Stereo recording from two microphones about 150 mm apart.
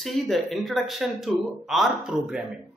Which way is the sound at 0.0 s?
Centre (ahead or behind).